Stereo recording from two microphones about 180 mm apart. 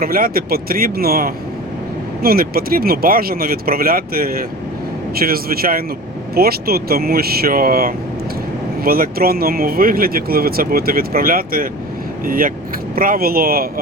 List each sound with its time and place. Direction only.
0.0 s speech: 55° right (ahead or behind)